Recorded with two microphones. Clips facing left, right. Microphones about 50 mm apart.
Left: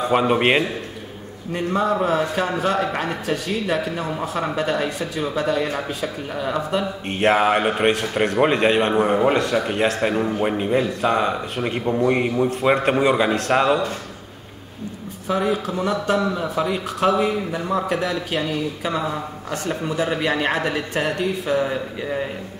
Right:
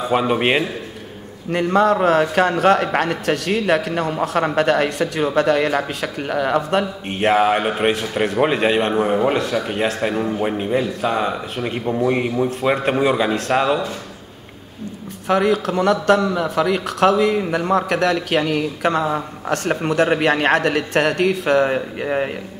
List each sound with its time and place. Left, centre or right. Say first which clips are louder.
0.0 s a man's voice: even; centre
1.5 s a man's voice: right 5 dB; right
7.1 s a man's voice: right 1 dB; centre
15.2 s a man's voice: right 4 dB; right